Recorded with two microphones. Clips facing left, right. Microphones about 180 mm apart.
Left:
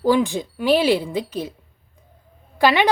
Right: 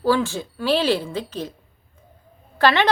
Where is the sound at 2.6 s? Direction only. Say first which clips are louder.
Left 1 dB; 10° left (ahead or behind).